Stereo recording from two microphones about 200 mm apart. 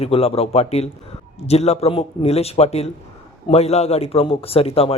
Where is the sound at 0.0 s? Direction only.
30° left (ahead or behind).